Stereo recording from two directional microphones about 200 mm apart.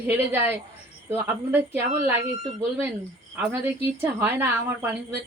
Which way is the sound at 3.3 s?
10° right (ahead or behind).